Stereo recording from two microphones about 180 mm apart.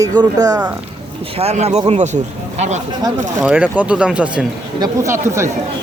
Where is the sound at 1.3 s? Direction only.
35° right (ahead or behind).